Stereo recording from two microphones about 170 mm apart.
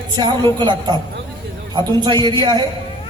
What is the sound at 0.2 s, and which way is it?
A man's voice, 25° right (ahead or behind).